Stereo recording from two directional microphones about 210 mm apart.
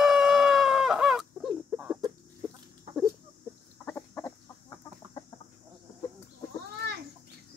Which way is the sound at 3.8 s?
10° left (ahead or behind).